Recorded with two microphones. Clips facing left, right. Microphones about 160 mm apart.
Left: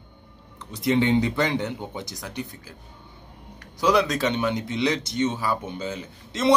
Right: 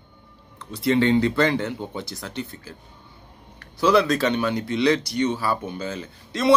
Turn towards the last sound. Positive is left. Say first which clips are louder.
# right 2 dB
turn(degrees=20)  # may be behind; listen again after turning